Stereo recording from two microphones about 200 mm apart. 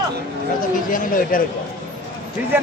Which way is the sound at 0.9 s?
45° left (ahead or behind).